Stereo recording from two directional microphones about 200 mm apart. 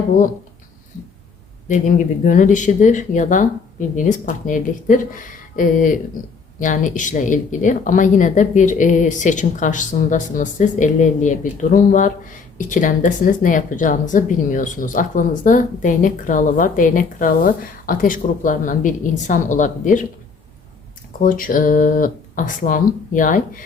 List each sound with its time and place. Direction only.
1.7 s a woman's voice: 40° left (ahead or behind)
21.2 s speech: 45° left (ahead or behind)